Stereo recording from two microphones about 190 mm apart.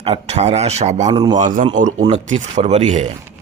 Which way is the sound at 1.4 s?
45° right (ahead or behind).